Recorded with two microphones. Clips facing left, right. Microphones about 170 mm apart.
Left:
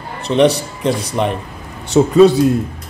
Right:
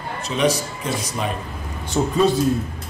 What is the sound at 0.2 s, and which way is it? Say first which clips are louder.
Speech: left 8 dB; 65° left (ahead or behind).